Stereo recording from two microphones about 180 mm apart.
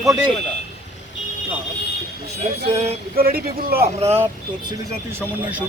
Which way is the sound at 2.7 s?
35° right (ahead or behind).